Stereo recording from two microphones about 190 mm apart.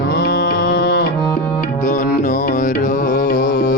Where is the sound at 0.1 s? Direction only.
60° left (ahead or behind).